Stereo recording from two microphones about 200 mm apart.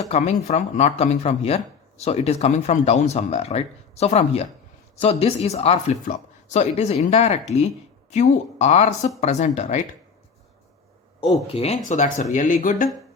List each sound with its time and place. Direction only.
0.1 s speech: 35° left (ahead or behind)
11.2 s speech: 30° left (ahead or behind)